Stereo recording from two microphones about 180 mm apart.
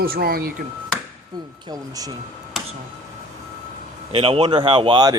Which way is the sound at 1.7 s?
20° right (ahead or behind).